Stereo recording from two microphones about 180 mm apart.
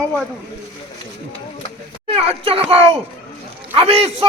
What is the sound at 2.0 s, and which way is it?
A child's voice, 35° right (ahead or behind).